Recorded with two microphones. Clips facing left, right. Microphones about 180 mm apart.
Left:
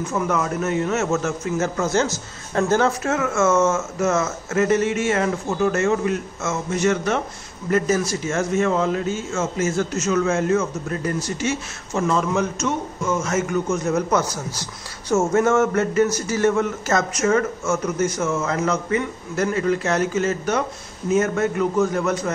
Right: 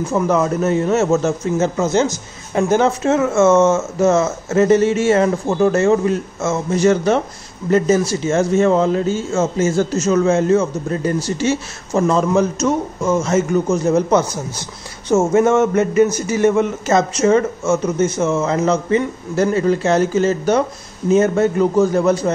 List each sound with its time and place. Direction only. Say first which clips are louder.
0.0 s a man's voice: right 6 dB; 30° right (ahead or behind)